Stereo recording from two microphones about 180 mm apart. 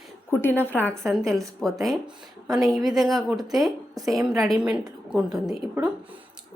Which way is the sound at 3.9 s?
20° right (ahead or behind).